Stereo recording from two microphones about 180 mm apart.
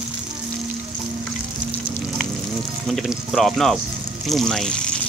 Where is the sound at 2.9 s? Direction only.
Centre (ahead or behind).